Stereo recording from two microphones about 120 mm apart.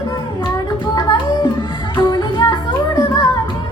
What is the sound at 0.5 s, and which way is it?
Child singing, 35° left (ahead or behind).